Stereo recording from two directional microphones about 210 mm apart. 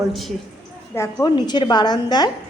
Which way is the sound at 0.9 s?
10° left (ahead or behind).